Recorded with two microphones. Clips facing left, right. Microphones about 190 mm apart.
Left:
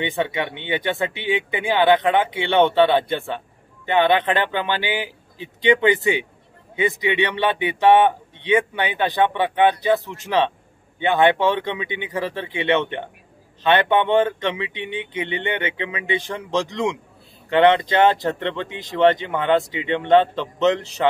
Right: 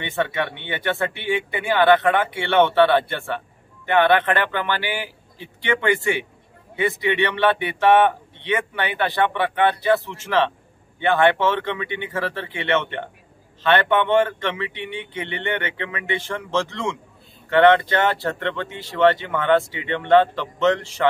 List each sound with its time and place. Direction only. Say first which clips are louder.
0.0 s speech: left 1 dB; 15° left (ahead or behind)